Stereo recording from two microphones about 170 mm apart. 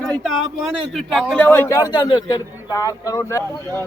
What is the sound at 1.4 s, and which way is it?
A man's voice, 15° left (ahead or behind).